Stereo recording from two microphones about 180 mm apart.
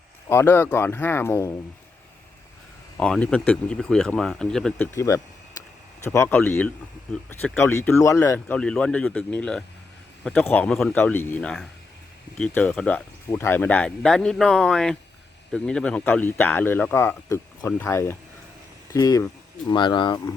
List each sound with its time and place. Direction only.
0.3 s speech: 15° left (ahead or behind)
3.0 s speech: 5° left (ahead or behind)
4.9 s speech: 15° left (ahead or behind)